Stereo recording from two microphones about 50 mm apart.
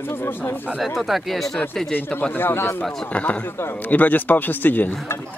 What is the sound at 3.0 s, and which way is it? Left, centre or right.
Speech, left.